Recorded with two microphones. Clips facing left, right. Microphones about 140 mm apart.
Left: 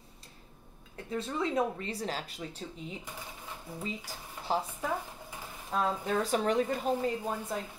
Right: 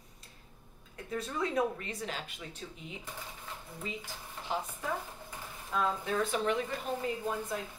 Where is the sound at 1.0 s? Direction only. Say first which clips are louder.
Left 2 dB; 25° left (ahead or behind).